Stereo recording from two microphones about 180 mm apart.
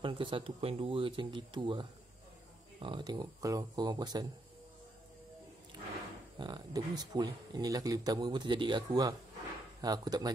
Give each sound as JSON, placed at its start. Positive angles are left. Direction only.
{"t": 0.0, "sound": "speech", "side_deg": -25}
{"t": 6.3, "sound": "speech", "side_deg": -25}